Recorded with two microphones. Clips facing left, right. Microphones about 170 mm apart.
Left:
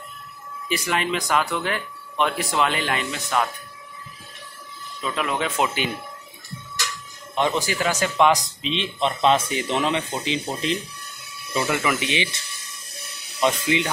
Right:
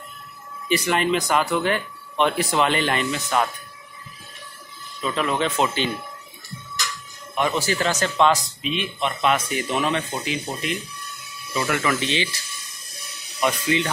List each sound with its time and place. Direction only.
0.7 s speech: centre (ahead or behind)
5.1 s speech: 5° left (ahead or behind)
7.3 s speech: 20° left (ahead or behind)
8.6 s speech: 25° left (ahead or behind)
11.5 s speech: 15° left (ahead or behind)
13.4 s speech: 20° left (ahead or behind)